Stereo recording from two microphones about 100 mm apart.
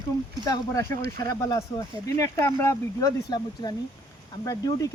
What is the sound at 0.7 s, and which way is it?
Speech, 30° left (ahead or behind).